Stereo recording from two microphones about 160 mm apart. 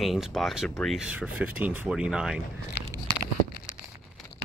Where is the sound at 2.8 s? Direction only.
90° left.